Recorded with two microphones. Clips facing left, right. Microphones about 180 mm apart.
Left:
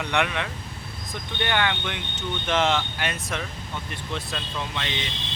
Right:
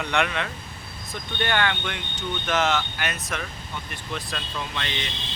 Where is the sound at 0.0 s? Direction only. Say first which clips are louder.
Even; 15° left (ahead or behind).